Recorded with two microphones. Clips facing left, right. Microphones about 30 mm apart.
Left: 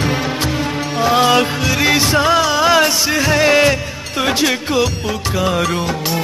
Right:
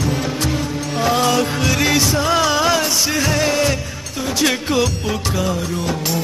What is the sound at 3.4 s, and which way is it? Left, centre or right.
Music, left.